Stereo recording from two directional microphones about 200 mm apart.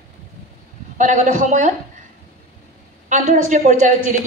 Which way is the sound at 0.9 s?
40° right (ahead or behind).